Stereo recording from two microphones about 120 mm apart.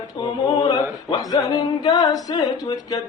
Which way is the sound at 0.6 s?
35° left (ahead or behind).